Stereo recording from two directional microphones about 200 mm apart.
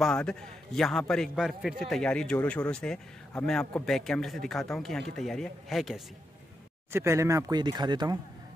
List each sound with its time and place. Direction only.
0.0 s a man's voice: 5° left (ahead or behind)
6.9 s speech: 15° right (ahead or behind)